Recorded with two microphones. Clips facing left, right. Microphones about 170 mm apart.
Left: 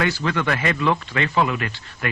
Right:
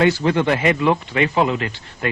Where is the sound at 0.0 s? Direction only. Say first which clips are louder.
Right 6 dB; 25° right (ahead or behind).